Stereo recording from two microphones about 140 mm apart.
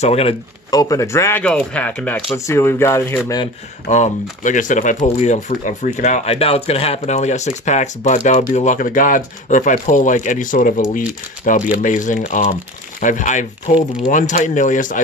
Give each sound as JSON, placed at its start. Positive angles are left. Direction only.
{"t": 0.0, "sound": "speech", "side_deg": 45}
{"t": 0.7, "sound": "speech", "side_deg": 25}
{"t": 1.4, "sound": "speech", "side_deg": 10}
{"t": 3.9, "sound": "speech", "side_deg": 60}